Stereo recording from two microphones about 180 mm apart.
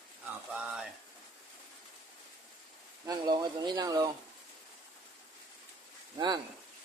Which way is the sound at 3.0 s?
20° right (ahead or behind).